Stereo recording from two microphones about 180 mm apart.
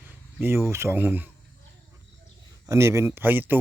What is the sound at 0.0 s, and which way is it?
Speech, 10° right (ahead or behind).